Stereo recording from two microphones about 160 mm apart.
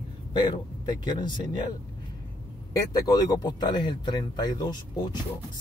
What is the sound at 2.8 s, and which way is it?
Speech, 25° left (ahead or behind).